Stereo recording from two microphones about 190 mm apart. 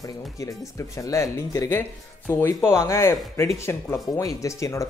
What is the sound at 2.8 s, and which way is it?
Speech, 15° left (ahead or behind).